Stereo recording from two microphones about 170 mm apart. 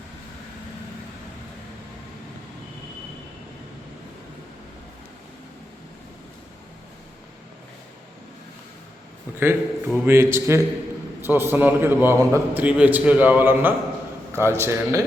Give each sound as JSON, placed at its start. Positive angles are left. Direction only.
{"t": 9.4, "sound": "a man's voice", "side_deg": -15}